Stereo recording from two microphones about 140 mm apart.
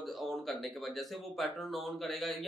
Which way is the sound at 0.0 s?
Centre (ahead or behind).